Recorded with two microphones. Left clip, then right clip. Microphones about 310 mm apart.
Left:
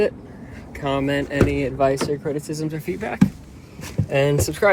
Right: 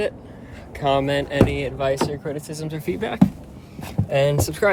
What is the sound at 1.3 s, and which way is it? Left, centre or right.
Speech, right.